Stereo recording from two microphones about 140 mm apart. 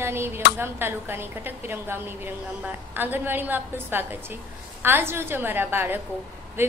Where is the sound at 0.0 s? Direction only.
15° right (ahead or behind).